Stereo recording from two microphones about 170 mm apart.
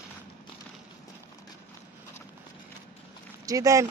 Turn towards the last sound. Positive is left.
turn(degrees=-20)  # may be behind; listen again after turning